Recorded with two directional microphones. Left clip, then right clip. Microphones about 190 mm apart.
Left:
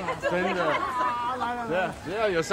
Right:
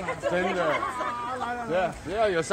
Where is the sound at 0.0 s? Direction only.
45° right (ahead or behind).